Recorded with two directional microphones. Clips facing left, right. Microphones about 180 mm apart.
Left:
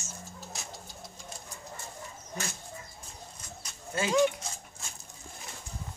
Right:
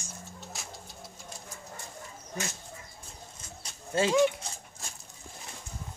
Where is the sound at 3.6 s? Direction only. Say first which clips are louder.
Right 5 dB; 30° right (ahead or behind).